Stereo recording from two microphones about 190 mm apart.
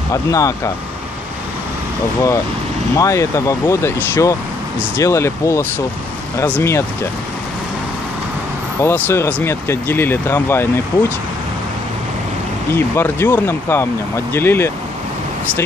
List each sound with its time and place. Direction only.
0.1 s speech: 15° left (ahead or behind)
3.0 s speech: 15° left (ahead or behind)
8.8 s speech: 10° left (ahead or behind)
12.7 s speech: 10° left (ahead or behind)